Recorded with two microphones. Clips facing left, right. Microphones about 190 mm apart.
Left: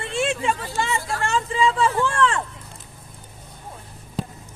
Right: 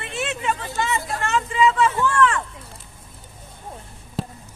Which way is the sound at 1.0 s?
20° right (ahead or behind).